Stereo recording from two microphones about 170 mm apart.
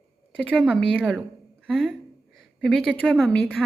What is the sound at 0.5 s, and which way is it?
A woman's voice, 5° right (ahead or behind).